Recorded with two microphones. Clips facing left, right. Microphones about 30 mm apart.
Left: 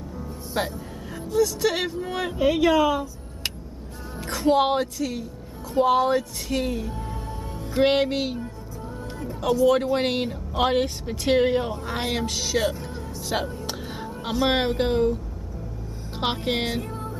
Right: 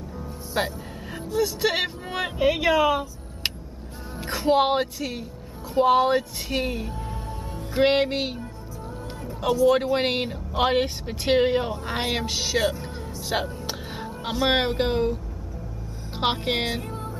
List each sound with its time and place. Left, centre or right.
0.6 s speech: centre
7.5 s music: centre
9.7 s speech: centre
16.2 s music: centre